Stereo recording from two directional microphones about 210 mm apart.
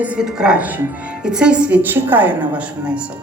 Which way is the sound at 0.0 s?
5° right (ahead or behind).